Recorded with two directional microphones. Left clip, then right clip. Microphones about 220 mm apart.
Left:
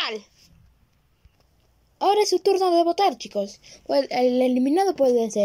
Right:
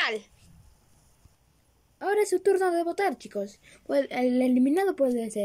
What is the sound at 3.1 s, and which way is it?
Speech, 40° right (ahead or behind).